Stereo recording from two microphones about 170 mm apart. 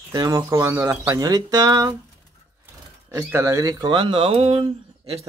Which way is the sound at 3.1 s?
15° right (ahead or behind).